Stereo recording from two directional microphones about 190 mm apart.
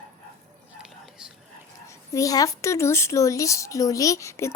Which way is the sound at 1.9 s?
15° left (ahead or behind).